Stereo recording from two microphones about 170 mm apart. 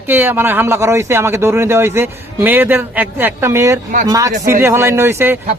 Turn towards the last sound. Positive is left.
turn(degrees=-15)  # may be behind; listen again after turning